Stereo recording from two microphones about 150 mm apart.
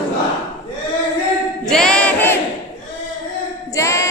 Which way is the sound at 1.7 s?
5° left (ahead or behind).